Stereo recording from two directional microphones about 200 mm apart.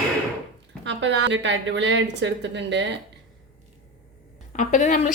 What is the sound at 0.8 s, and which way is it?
A woman's voice, 65° right (ahead or behind).